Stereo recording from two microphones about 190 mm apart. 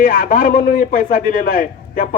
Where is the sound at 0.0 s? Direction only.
50° left (ahead or behind).